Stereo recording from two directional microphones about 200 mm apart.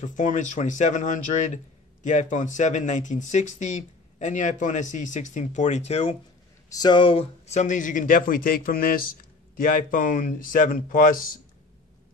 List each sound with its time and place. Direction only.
0.0 s speech: 40° left (ahead or behind)
6.7 s speech: 20° left (ahead or behind); by 11.1 s 45° left (ahead or behind)